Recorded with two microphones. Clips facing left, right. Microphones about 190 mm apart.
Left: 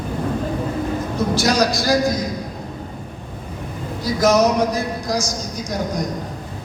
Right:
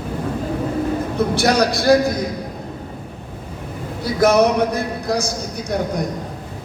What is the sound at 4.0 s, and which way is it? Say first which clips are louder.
A man's voice: right 1 dB; 60° right (ahead or behind).